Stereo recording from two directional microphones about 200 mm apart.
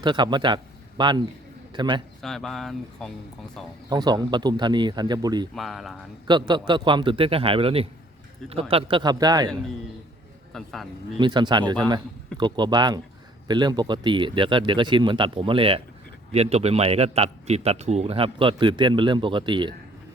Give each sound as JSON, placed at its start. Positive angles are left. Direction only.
{"t": 0.0, "sound": "a man's voice", "side_deg": -20}
{"t": 2.2, "sound": "speech", "side_deg": 0}
{"t": 3.8, "sound": "a man's voice", "side_deg": -20}
{"t": 5.5, "sound": "speech", "side_deg": 0}
{"t": 6.2, "sound": "a man's voice", "side_deg": -20}
{"t": 10.5, "sound": "speech", "side_deg": 0}
{"t": 11.2, "sound": "a man's voice", "side_deg": -25}